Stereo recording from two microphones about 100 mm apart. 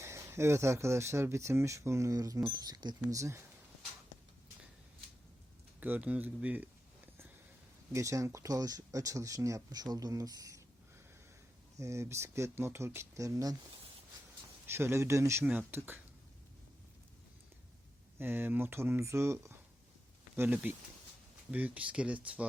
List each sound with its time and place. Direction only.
0.0 s speech: 30° right (ahead or behind)
5.8 s speech: 15° right (ahead or behind)
7.9 s speech: 30° right (ahead or behind)
11.8 s speech: 30° right (ahead or behind)
14.7 s speech: 25° right (ahead or behind)
18.2 s speech: 20° right (ahead or behind)